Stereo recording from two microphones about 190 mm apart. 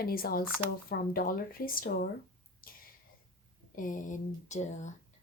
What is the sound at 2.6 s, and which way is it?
Whispering, 50° left (ahead or behind).